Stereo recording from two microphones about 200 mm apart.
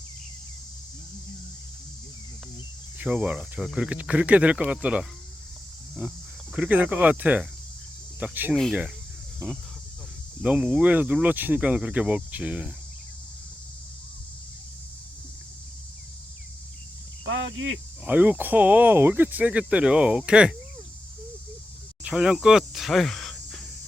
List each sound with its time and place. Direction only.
3.0 s speech: 5° right (ahead or behind)
10.4 s speech: 5° right (ahead or behind)
17.2 s speech: 75° right (ahead or behind)
18.0 s speech: 10° right (ahead or behind)
22.0 s speech: 5° right (ahead or behind)